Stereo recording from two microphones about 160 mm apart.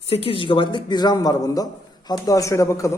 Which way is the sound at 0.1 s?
35° left (ahead or behind).